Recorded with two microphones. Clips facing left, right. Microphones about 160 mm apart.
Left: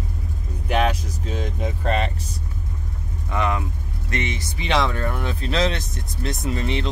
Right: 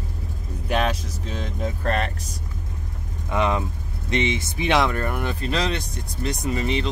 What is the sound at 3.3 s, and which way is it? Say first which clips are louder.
Speech: right 2 dB; 25° right (ahead or behind).